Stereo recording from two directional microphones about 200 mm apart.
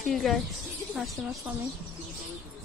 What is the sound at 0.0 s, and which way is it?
Speech, centre (ahead or behind).